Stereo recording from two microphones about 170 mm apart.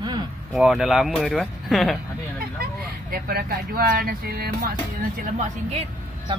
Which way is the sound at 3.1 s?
60° right (ahead or behind).